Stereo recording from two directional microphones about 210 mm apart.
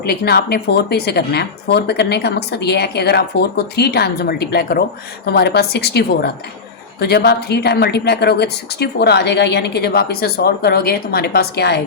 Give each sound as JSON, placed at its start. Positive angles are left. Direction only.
{"t": 0.0, "sound": "speech", "side_deg": 50}